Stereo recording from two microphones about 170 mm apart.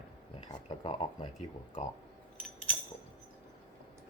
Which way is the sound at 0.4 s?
40° left (ahead or behind).